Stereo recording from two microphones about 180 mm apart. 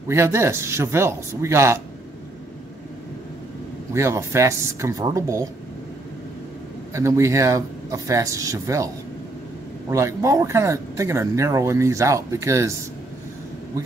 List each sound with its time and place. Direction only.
0.1 s speech: 15° right (ahead or behind)
3.9 s speech: 15° right (ahead or behind)
6.9 s speech: 15° right (ahead or behind)